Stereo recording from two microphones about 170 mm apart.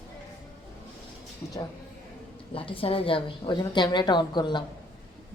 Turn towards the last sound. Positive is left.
turn(degrees=25)  # may be behind; listen again after turning